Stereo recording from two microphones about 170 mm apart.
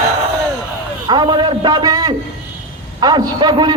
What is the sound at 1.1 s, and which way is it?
A man's voice, 25° right (ahead or behind).